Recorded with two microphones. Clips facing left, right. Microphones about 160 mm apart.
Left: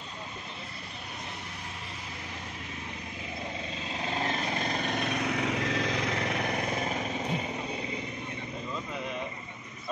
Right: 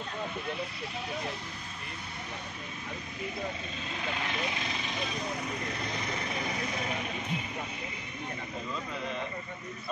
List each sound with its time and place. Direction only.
4.0 s vehicle: 35° left (ahead or behind); by 6.1 s 90° left